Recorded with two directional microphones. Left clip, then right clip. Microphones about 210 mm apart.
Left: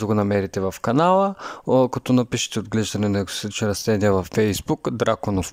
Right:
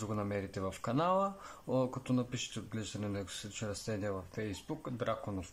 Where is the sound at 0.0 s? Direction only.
40° left (ahead or behind).